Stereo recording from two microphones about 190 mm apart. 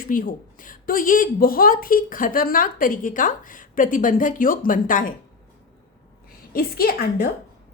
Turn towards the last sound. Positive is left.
turn(degrees=50)  # may be behind; listen again after turning